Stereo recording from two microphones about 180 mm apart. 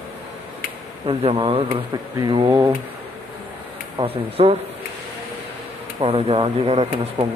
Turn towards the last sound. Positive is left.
turn(degrees=-30)  # may be behind; listen again after turning